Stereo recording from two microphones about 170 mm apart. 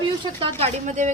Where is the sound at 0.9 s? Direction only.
45° right (ahead or behind).